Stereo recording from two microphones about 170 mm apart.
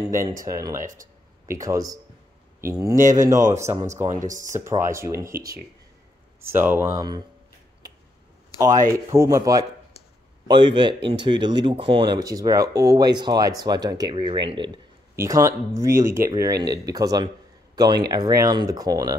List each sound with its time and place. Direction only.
0.0 s speech: 20° right (ahead or behind)
3.8 s speech: 45° right (ahead or behind)
4.5 s speech: 15° right (ahead or behind)
6.4 s speech: 10° right (ahead or behind)
8.5 s speech: 20° right (ahead or behind)